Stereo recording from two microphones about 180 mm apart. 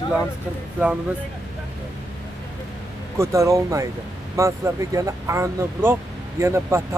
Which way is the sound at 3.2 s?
15° right (ahead or behind).